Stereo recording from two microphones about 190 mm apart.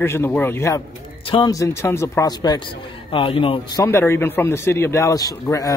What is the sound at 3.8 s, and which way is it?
A man's voice, 15° left (ahead or behind).